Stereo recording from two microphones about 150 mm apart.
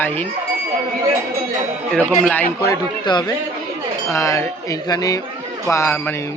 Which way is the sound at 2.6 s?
25° left (ahead or behind).